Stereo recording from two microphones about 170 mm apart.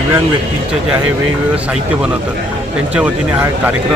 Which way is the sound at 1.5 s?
5° right (ahead or behind).